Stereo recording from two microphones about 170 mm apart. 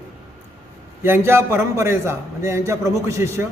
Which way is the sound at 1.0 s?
15° right (ahead or behind).